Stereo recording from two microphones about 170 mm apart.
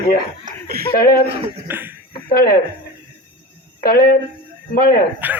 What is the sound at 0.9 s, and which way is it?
Speech, 60° left (ahead or behind).